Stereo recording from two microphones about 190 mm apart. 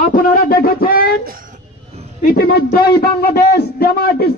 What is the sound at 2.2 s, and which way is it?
Speech, 45° left (ahead or behind).